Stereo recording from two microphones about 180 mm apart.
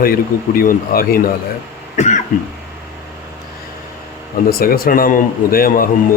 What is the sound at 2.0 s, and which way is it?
Cough, 40° left (ahead or behind).